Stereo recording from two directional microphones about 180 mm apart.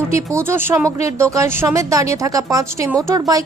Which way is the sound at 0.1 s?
15° right (ahead or behind).